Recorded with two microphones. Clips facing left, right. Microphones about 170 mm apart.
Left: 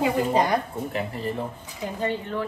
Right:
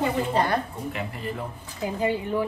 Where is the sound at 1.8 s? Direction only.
10° right (ahead or behind).